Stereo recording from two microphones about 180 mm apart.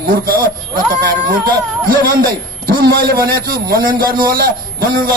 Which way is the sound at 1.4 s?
55° right (ahead or behind).